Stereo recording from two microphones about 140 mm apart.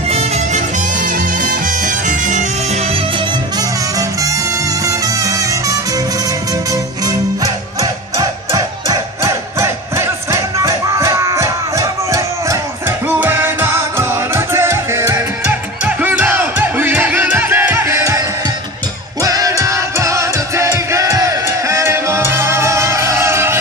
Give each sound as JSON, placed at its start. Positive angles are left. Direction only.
{"t": 0.1, "sound": "music", "side_deg": -50}
{"t": 3.5, "sound": "music", "side_deg": -25}
{"t": 7.8, "sound": "music", "side_deg": -25}
{"t": 19.2, "sound": "music", "side_deg": -25}